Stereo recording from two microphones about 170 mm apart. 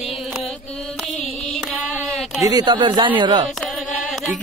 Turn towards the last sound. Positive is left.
turn(degrees=5)  # may be behind; listen again after turning